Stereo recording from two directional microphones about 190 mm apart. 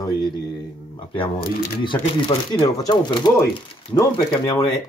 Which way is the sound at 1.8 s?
25° left (ahead or behind).